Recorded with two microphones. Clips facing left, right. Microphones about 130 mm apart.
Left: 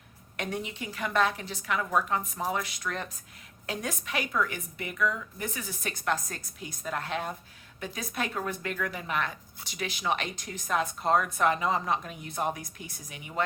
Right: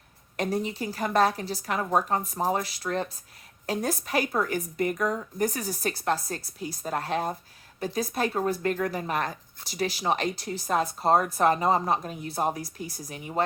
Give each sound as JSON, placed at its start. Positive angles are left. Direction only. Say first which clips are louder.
{"t": 0.3, "sound": "speech", "louder": "right 6 dB", "side_deg": -35}